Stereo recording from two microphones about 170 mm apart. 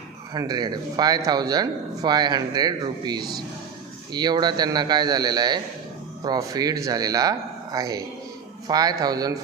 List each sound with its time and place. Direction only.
0.3 s speech: 25° right (ahead or behind)